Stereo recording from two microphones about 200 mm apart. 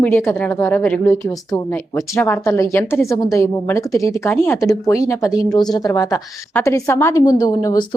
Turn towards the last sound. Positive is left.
turn(degrees=15)  # may be behind; listen again after turning